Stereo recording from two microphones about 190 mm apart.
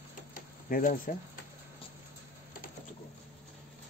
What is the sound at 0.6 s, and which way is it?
Speech, 45° left (ahead or behind).